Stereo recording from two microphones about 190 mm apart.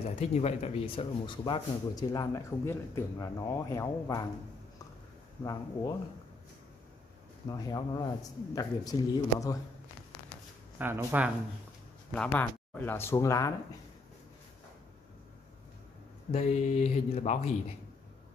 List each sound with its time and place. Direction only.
0.1 s speech: 35° left (ahead or behind); by 4.3 s 15° left (ahead or behind)
5.4 s speech: 20° left (ahead or behind)
7.4 s speech: 20° left (ahead or behind)
10.8 s speech: 10° right (ahead or behind)
12.1 s speech: 10° left (ahead or behind)
16.3 s speech: 35° left (ahead or behind)